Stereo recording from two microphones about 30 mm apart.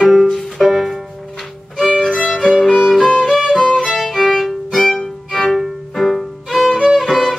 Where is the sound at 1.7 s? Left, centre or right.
Centre.